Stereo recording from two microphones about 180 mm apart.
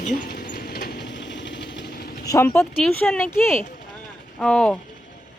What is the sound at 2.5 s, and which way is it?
Speech, 5° left (ahead or behind).